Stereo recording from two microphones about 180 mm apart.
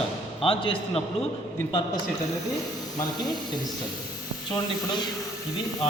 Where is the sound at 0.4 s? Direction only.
30° left (ahead or behind).